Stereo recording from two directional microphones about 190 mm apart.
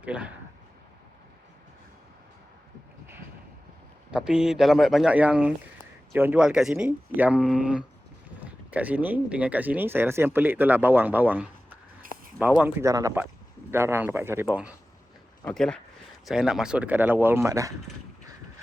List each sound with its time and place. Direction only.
0.0 s speech: 5° right (ahead or behind)
4.1 s speech: 5° right (ahead or behind)
12.0 s a sound: 50° right (ahead or behind)
12.4 s speech: 5° right (ahead or behind)